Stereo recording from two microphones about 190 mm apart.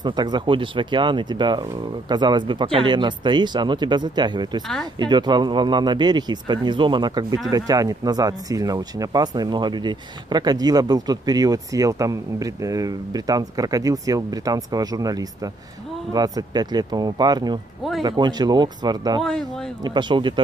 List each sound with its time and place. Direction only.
0.0 s speech: 20° right (ahead or behind)
19.2 s speech: 5° left (ahead or behind)
19.8 s speech: 25° right (ahead or behind)